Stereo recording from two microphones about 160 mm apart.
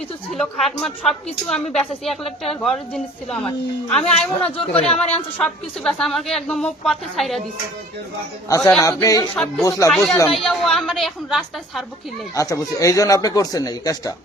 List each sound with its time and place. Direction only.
0.3 s a woman's voice: centre (ahead or behind)
4.5 s speech: 40° left (ahead or behind)
5.4 s a woman's voice: 5° left (ahead or behind)
8.4 s speech: 20° left (ahead or behind)
9.3 s a woman's voice: 5° left (ahead or behind)
9.6 s speech: 20° left (ahead or behind)
10.2 s a woman's voice: centre (ahead or behind)
12.3 s speech: 20° left (ahead or behind)